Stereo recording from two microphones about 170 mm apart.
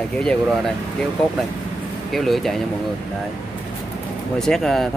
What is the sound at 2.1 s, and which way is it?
Speech, centre (ahead or behind).